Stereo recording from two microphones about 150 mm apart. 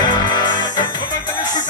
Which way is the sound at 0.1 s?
30° left (ahead or behind).